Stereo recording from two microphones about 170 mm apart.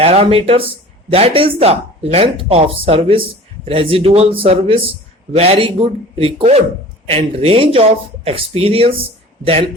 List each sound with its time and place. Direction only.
0.0 s speech: 35° right (ahead or behind)